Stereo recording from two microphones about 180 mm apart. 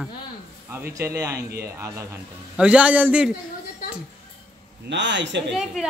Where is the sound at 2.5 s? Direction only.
5° right (ahead or behind).